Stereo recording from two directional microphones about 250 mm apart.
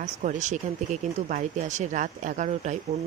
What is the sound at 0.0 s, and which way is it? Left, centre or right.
Speech, right.